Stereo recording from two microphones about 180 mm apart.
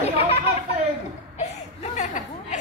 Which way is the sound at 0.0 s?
35° left (ahead or behind).